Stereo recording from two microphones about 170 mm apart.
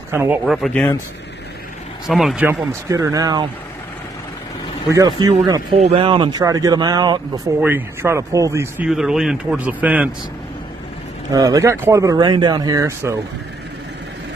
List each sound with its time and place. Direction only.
0.1 s speech: 15° right (ahead or behind)
0.5 s a man's voice: centre (ahead or behind)
2.0 s a man's voice: centre (ahead or behind)
2.9 s speech: 20° right (ahead or behind)
4.9 s speech: 25° right (ahead or behind)
7.6 s speech: 15° right (ahead or behind)
8.8 s a man's voice: 5° right (ahead or behind)
11.3 s speech: 20° right (ahead or behind)